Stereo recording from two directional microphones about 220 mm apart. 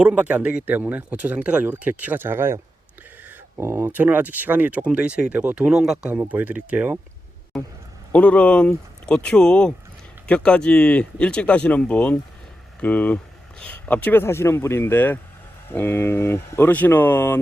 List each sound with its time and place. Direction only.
0.0 s speech: 5° right (ahead or behind); by 17.4 s 10° left (ahead or behind)